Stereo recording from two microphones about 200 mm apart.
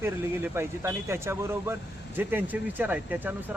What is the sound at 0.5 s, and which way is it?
Speech, 15° right (ahead or behind).